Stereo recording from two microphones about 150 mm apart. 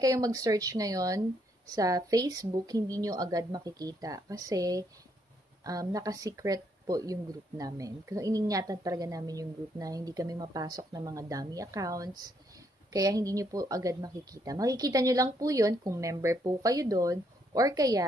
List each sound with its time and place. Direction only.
0.0 s speech: 25° right (ahead or behind)